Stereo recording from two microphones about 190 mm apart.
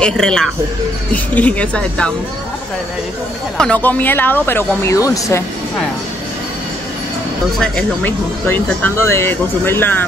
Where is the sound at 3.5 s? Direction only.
5° left (ahead or behind).